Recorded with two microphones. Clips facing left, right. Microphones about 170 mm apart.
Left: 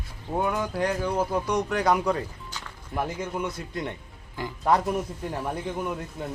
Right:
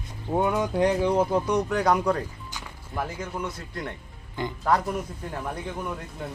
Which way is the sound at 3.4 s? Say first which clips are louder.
Left 2 dB; 20° left (ahead or behind).